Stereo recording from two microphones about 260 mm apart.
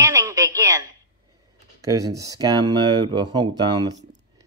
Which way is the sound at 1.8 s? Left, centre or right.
Centre.